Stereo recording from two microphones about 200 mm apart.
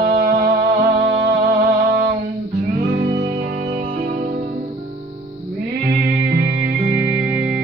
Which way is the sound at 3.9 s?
45° right (ahead or behind).